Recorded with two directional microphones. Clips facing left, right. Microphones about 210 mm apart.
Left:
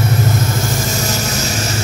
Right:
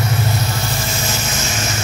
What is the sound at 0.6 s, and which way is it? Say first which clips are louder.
Vehicle: left 4 dB; 45° left (ahead or behind).